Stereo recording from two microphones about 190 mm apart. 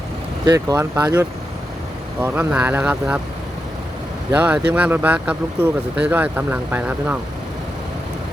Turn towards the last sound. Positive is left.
turn(degrees=-10)  # may be behind; listen again after turning